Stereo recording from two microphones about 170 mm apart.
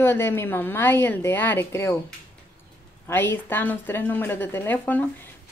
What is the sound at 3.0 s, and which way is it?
A woman's voice, 10° left (ahead or behind).